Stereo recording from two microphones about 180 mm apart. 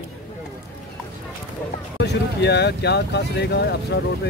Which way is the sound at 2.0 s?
70° left (ahead or behind).